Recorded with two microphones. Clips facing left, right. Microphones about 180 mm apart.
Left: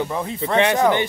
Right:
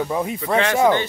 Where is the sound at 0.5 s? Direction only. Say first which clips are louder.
Left 1 dB; 15° left (ahead or behind).